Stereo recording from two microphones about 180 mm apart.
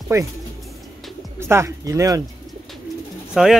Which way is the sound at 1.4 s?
15° right (ahead or behind).